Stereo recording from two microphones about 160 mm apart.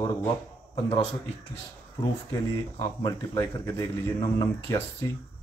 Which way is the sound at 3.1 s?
20° left (ahead or behind).